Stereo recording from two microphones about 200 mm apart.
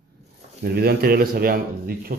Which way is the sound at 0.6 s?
50° right (ahead or behind).